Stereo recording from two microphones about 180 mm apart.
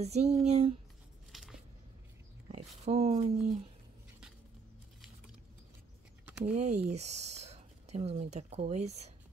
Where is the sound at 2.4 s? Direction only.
35° right (ahead or behind).